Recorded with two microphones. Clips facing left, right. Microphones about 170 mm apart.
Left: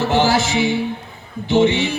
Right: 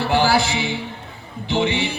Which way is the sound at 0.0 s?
20° left (ahead or behind).